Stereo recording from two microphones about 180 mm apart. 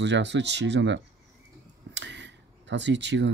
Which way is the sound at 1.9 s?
80° right.